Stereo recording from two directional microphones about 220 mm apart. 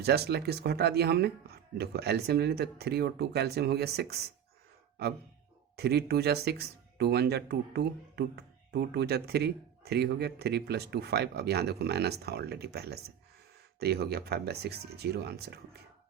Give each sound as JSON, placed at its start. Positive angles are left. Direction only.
{"t": 0.0, "sound": "speech", "side_deg": -45}
{"t": 5.7, "sound": "speech", "side_deg": -45}